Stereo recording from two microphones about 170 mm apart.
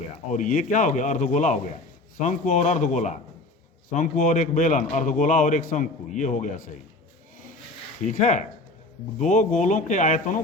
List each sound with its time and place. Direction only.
0.3 s a man's voice: 50° left (ahead or behind)
8.2 s a man's voice: 45° left (ahead or behind)